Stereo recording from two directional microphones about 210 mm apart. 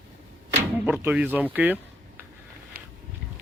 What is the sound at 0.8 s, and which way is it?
Speech, 5° right (ahead or behind).